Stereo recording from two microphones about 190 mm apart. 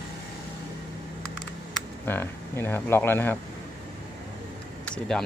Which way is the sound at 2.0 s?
10° left (ahead or behind).